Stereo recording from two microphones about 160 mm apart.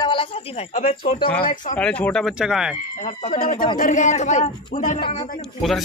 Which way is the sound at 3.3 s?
45° left (ahead or behind).